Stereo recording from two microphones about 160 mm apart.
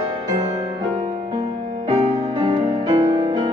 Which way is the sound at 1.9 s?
35° right (ahead or behind).